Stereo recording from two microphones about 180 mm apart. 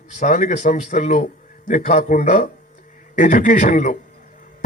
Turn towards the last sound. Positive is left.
turn(degrees=45)  # may be behind; listen again after turning